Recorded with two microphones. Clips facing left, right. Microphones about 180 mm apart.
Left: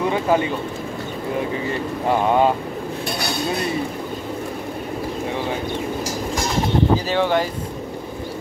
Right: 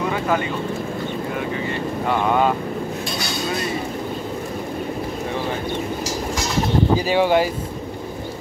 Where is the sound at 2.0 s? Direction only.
30° left (ahead or behind).